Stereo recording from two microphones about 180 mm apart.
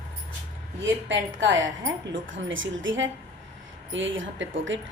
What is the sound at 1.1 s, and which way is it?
A woman's voice, 90° right.